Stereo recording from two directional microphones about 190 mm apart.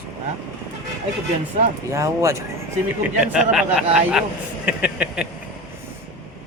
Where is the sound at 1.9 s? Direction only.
15° right (ahead or behind).